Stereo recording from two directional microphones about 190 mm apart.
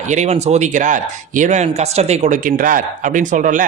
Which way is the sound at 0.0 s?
40° right (ahead or behind).